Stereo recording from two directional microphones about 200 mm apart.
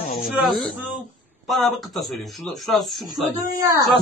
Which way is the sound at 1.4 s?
Centre (ahead or behind).